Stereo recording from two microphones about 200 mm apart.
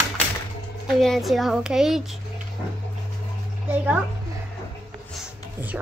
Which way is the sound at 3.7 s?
10° right (ahead or behind).